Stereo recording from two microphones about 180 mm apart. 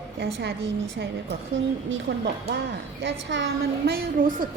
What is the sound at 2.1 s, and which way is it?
A woman's voice, 75° right (ahead or behind).